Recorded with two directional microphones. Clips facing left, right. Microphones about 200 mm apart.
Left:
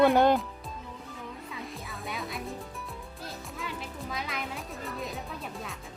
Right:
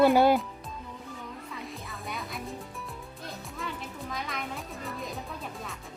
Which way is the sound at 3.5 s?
Centre (ahead or behind).